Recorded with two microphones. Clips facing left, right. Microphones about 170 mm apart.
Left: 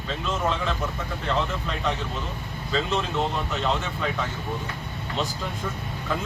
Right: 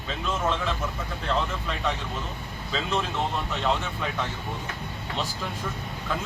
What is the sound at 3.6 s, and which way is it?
Speech, 5° right (ahead or behind).